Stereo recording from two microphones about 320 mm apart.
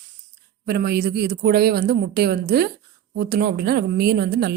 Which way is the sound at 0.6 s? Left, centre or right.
Right.